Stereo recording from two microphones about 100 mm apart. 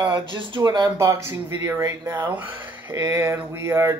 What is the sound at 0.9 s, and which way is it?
Speech, 30° right (ahead or behind).